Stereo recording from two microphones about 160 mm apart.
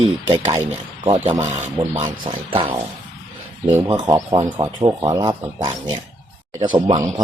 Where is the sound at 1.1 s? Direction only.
30° right (ahead or behind).